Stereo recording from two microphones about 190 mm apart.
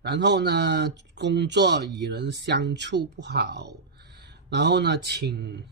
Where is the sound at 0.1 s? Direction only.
60° right (ahead or behind).